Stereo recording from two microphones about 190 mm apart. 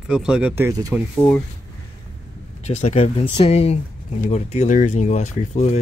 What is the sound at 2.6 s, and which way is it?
Speech, 35° left (ahead or behind).